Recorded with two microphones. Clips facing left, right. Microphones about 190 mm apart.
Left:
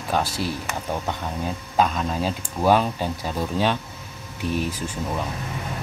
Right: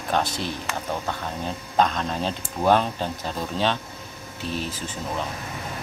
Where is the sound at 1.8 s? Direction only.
5° left (ahead or behind).